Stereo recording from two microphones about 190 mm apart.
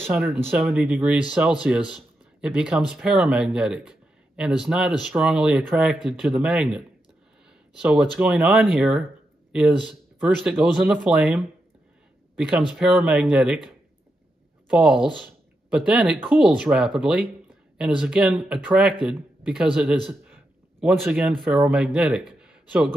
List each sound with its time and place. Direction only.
0.0 s speech: 10° right (ahead or behind)
20.1 s a sound: 10° right (ahead or behind)
20.9 s speech: centre (ahead or behind)